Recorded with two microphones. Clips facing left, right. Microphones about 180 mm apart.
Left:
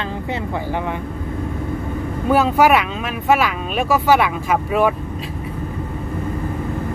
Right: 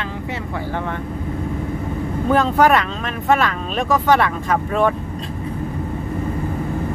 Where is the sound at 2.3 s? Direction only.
10° left (ahead or behind).